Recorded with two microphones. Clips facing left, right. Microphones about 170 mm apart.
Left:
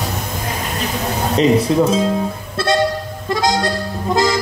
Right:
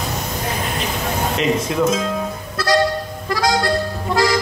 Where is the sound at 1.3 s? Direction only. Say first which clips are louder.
Left 8 dB; 35° left (ahead or behind).